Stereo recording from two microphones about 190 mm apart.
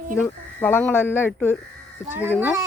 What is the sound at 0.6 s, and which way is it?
Speech, 10° left (ahead or behind).